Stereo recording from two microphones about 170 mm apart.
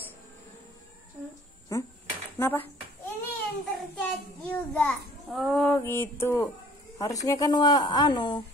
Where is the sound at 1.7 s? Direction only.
15° left (ahead or behind).